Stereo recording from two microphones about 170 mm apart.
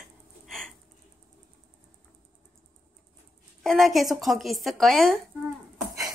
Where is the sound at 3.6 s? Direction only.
Centre (ahead or behind).